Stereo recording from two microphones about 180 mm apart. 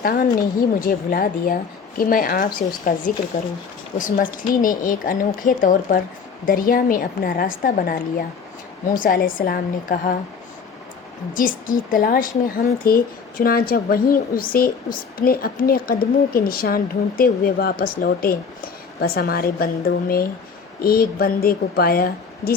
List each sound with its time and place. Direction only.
0.0 s speech: 55° left (ahead or behind)
9.0 s speech: 50° left (ahead or behind)
11.3 s a woman's voice: 50° left (ahead or behind)